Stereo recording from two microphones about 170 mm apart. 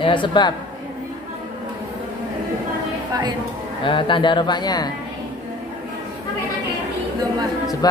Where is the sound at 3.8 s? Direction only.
30° left (ahead or behind).